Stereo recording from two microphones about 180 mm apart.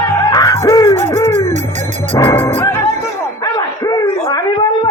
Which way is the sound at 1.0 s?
40° right (ahead or behind).